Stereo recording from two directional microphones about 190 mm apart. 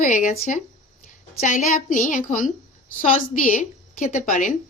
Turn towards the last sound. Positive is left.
turn(degrees=40)  # may be behind; listen again after turning